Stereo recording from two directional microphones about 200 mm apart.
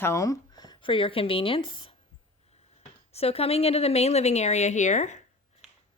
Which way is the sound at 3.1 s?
30° left (ahead or behind).